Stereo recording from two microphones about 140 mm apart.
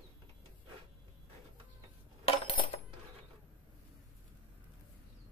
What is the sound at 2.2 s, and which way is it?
Coin, 40° left (ahead or behind).